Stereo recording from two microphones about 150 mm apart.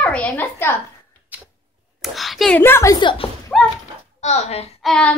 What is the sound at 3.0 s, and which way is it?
Speech, 35° left (ahead or behind).